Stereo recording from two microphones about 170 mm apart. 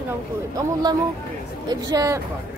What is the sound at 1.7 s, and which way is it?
Speech, 20° right (ahead or behind).